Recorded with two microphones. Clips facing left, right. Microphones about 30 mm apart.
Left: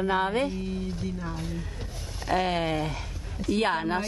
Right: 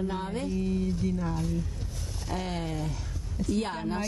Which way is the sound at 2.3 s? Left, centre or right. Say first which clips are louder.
Left 8 dB; left.